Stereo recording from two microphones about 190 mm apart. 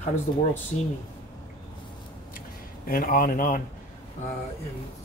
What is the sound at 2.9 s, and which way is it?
Speech, 50° left (ahead or behind).